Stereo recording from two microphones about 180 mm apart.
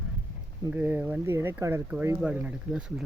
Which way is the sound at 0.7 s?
10° right (ahead or behind).